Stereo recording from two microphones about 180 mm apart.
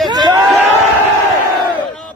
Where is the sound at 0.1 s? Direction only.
25° right (ahead or behind).